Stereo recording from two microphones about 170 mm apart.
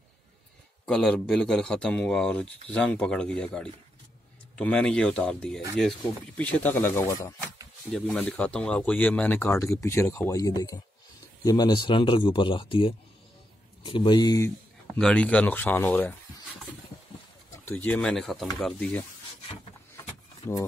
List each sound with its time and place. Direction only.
0.8 s speech: 5° left (ahead or behind); by 7.3 s 20° left (ahead or behind)
7.9 s a man's voice: 5° left (ahead or behind); by 14.5 s 25° left (ahead or behind)
15.0 s speech: 5° left (ahead or behind)
17.6 s speech: 10° left (ahead or behind)
20.4 s speech: 15° left (ahead or behind)